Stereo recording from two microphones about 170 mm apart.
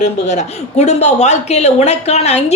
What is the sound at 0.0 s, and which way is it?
A woman's voice, 45° left (ahead or behind).